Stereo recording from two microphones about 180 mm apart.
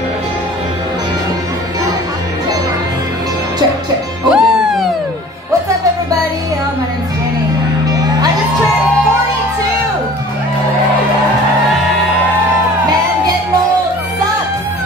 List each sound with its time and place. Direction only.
4.3 s music: 5° right (ahead or behind)
7.9 s music: 20° right (ahead or behind)